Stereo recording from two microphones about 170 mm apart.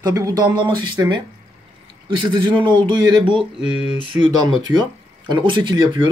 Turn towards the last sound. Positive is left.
turn(degrees=-30)  # may be behind; listen again after turning